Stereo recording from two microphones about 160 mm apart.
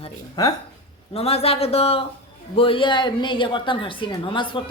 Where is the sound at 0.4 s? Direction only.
25° left (ahead or behind).